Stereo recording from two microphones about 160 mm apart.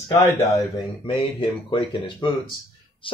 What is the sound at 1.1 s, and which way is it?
Speech, 35° left (ahead or behind).